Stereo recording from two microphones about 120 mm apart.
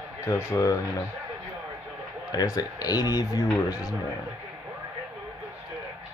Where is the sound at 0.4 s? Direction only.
25° left (ahead or behind).